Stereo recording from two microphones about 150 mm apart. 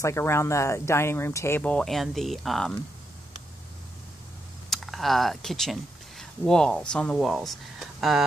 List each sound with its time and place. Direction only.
0.0 s speech: 15° left (ahead or behind); by 2.7 s centre (ahead or behind)
4.6 s speech: centre (ahead or behind)